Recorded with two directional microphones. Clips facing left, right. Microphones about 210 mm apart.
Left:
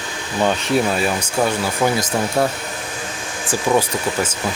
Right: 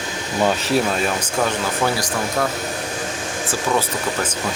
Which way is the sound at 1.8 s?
20° left (ahead or behind).